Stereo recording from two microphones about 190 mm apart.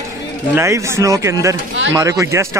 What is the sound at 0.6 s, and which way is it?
Speech, 15° right (ahead or behind).